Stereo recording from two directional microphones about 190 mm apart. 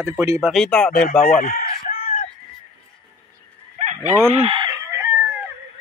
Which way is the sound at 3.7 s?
40° right (ahead or behind).